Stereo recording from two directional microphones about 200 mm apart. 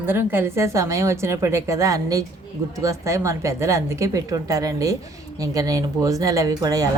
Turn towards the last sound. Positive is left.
turn(degrees=-15)  # may be behind; listen again after turning